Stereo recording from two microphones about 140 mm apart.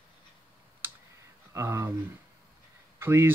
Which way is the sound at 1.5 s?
20° right (ahead or behind).